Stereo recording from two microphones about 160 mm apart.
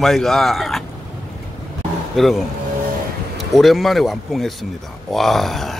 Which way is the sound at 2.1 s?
Centre (ahead or behind).